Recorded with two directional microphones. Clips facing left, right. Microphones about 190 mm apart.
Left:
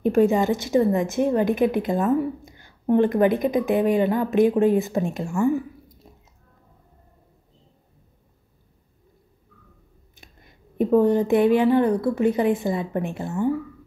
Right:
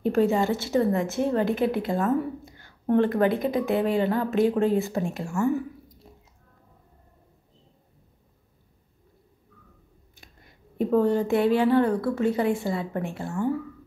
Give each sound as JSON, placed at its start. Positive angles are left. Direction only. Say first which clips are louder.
{"t": 0.0, "sound": "a woman's voice", "louder": "left 3 dB", "side_deg": 15}
{"t": 10.1, "sound": "speech", "louder": "left 2 dB", "side_deg": 20}